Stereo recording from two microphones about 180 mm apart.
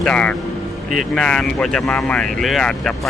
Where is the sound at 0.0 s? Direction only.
5° left (ahead or behind).